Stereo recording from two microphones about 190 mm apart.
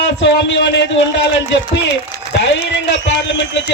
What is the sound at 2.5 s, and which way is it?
A man's voice, 70° left (ahead or behind).